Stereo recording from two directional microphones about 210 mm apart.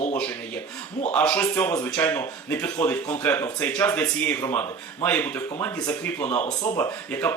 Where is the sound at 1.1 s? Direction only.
5° left (ahead or behind).